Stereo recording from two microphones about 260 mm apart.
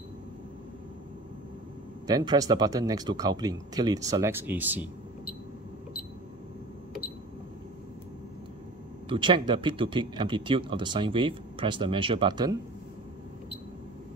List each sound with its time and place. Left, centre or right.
2.0 s speech: centre
9.1 s speech: centre